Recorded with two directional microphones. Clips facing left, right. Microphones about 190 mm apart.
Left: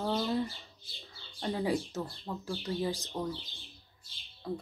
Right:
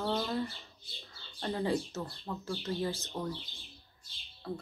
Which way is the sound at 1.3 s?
15° left (ahead or behind).